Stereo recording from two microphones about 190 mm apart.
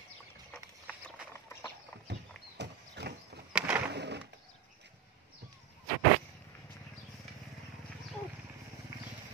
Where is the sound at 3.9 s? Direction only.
60° right (ahead or behind).